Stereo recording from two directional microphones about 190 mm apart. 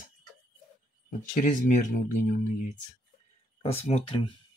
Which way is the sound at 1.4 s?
45° left (ahead or behind).